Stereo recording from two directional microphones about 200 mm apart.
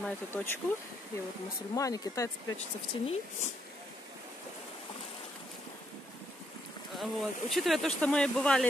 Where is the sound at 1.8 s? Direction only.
15° left (ahead or behind).